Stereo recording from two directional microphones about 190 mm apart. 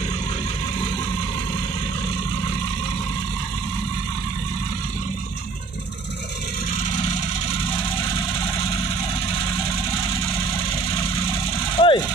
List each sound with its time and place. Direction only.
11.8 s vehicle: 25° left (ahead or behind)